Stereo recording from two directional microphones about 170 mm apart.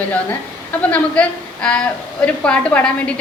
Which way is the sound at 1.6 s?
5° left (ahead or behind).